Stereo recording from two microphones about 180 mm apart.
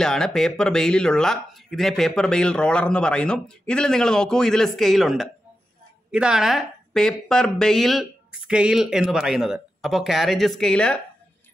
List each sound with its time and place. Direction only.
0.0 s speech: 5° left (ahead or behind)